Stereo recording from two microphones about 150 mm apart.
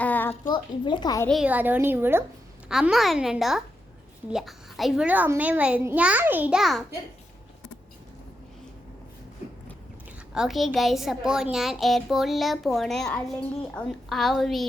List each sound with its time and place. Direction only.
0.0 s a sound: 10° left (ahead or behind)
0.5 s a woman's voice: 30° left (ahead or behind)
1.5 s a child's voice: 10° right (ahead or behind)
2.6 s a child's voice: 5° right (ahead or behind)
10.3 s a child's voice: centre (ahead or behind)